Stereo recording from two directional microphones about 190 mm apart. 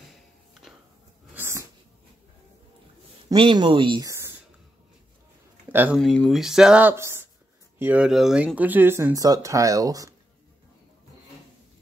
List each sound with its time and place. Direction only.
1.3 s sneeze: 15° right (ahead or behind)
3.3 s speech: 25° right (ahead or behind)
5.7 s speech: 10° right (ahead or behind)
5.9 s speech: centre (ahead or behind); by 10.1 s 20° right (ahead or behind)